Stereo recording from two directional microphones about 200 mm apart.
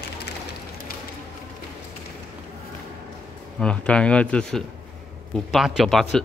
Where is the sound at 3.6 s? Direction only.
5° left (ahead or behind).